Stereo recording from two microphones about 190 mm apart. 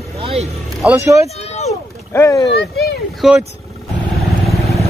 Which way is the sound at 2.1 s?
15° left (ahead or behind).